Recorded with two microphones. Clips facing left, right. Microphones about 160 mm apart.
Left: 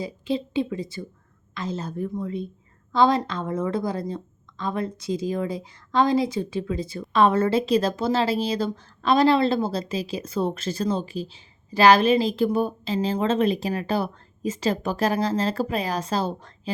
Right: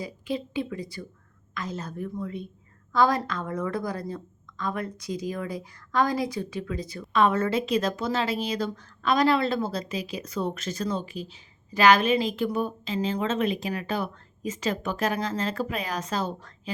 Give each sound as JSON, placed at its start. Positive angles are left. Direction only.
{"t": 0.0, "sound": "a woman's voice", "side_deg": 30}